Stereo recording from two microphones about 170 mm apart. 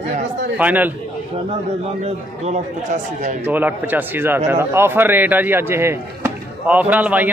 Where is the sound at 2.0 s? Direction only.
40° right (ahead or behind).